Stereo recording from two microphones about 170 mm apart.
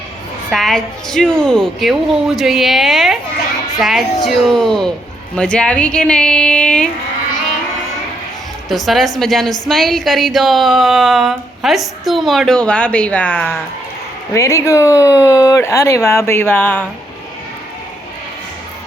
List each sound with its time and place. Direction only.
0.5 s a woman's voice: centre (ahead or behind)
8.7 s a woman's voice: centre (ahead or behind)